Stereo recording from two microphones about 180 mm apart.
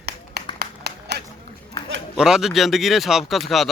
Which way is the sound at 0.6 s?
65° right (ahead or behind).